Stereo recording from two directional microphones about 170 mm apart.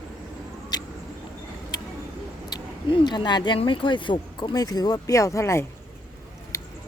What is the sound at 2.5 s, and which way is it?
Speech, 25° left (ahead or behind).